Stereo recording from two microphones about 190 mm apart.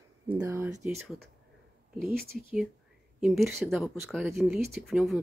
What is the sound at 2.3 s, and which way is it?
A woman's voice, centre (ahead or behind).